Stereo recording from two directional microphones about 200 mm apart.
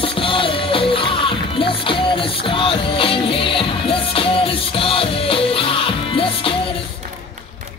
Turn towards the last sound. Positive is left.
turn(degrees=25)  # may be behind; listen again after turning